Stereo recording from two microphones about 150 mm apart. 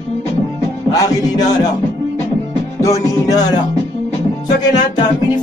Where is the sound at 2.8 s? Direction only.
20° left (ahead or behind).